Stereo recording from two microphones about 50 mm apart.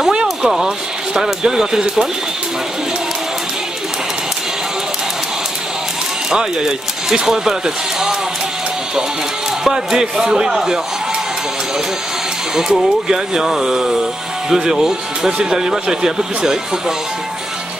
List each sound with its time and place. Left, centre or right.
0.1 s a sound: centre
0.5 s speech: centre
6.3 s speech: centre
9.7 s speech: centre
12.5 s speech: centre